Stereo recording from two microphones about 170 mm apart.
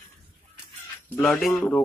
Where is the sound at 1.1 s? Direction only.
5° left (ahead or behind).